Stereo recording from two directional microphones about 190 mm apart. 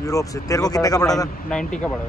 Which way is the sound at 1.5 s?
5° left (ahead or behind).